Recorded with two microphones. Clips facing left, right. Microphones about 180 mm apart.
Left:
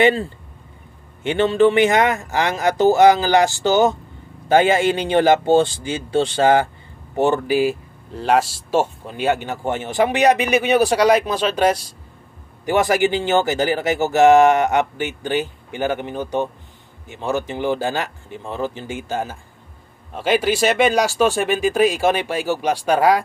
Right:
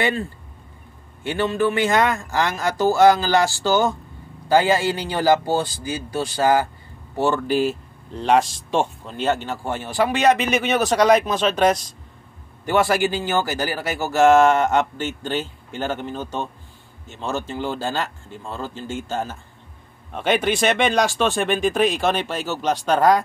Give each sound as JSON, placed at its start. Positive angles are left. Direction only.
{"t": 1.2, "sound": "speech", "side_deg": 20}
{"t": 7.2, "sound": "speech", "side_deg": 15}